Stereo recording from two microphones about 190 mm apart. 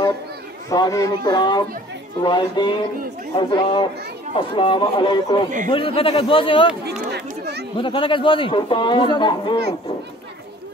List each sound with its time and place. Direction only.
0.7 s a man's voice: 15° left (ahead or behind)
7.1 s a sound: 60° right (ahead or behind)
7.7 s a man's voice: 25° left (ahead or behind)